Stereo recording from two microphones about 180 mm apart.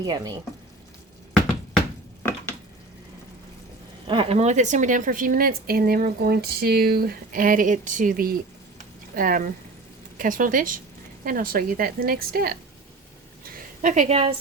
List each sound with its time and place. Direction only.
0.0 s speech: 20° right (ahead or behind)
4.0 s a woman's voice: 30° right (ahead or behind); by 12.5 s 55° right (ahead or behind)
13.4 s a sound: 50° right (ahead or behind)